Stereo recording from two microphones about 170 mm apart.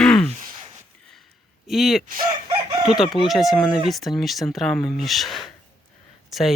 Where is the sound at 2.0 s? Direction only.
55° right (ahead or behind).